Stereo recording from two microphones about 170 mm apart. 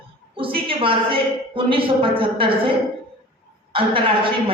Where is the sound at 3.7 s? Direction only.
30° right (ahead or behind).